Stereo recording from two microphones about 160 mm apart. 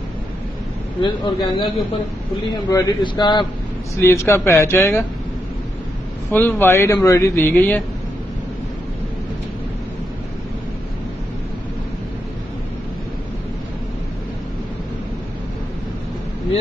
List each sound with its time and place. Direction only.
1.0 s speech: 30° left (ahead or behind)
2.7 s speech: 25° left (ahead or behind)
3.9 s speech: 15° left (ahead or behind)
6.3 s speech: 10° left (ahead or behind)